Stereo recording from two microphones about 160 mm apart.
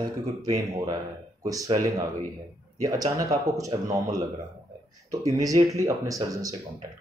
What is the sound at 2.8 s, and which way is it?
Speech, 20° right (ahead or behind).